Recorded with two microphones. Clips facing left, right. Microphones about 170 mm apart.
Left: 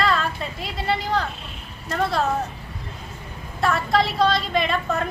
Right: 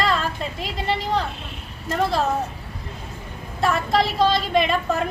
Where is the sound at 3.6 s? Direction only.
Centre (ahead or behind).